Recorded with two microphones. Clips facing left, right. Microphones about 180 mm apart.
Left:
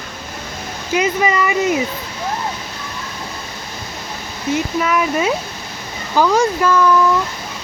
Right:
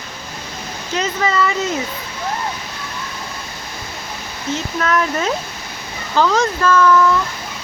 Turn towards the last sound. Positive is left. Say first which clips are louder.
# even
turn(degrees=15)  # may be behind; listen again after turning